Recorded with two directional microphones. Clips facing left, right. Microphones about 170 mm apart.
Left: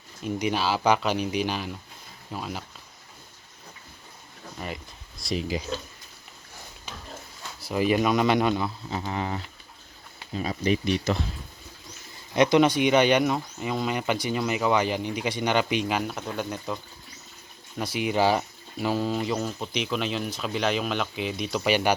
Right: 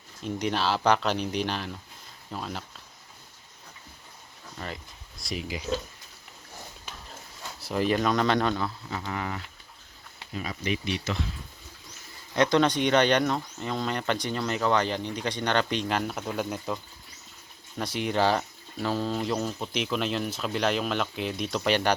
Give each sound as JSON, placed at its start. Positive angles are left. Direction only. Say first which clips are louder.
{"t": 0.2, "sound": "speech", "louder": "left 2 dB", "side_deg": 5}
{"t": 4.5, "sound": "speech", "louder": "left 2 dB", "side_deg": 10}
{"t": 5.3, "sound": "speech", "louder": "left 5 dB", "side_deg": 30}
{"t": 7.6, "sound": "speech", "louder": "left 2 dB", "side_deg": 5}
{"t": 9.0, "sound": "speech", "louder": "left 3 dB", "side_deg": 25}
{"t": 12.3, "sound": "speech", "louder": "left 3 dB", "side_deg": 15}